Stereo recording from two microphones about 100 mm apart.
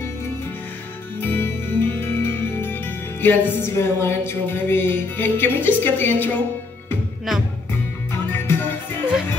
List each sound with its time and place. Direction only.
1.2 s music: 20° left (ahead or behind)
3.7 s speech: 25° left (ahead or behind)
8.3 s music: 20° left (ahead or behind)